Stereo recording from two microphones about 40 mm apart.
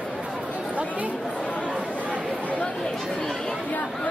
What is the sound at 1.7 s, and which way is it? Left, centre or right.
Chatter, right.